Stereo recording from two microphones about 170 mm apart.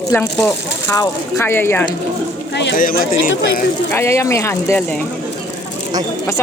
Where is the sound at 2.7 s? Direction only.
55° left (ahead or behind).